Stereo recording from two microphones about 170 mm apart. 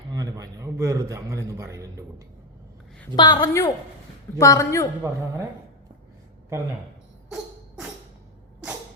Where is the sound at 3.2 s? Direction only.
25° left (ahead or behind).